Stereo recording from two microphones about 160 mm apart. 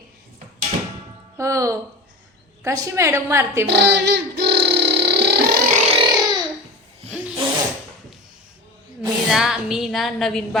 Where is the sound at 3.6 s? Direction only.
90° right.